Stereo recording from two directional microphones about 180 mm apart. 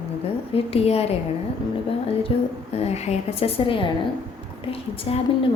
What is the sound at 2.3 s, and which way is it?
A woman's voice, 30° left (ahead or behind).